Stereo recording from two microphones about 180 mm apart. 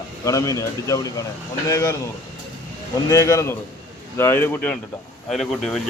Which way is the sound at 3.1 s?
15° left (ahead or behind).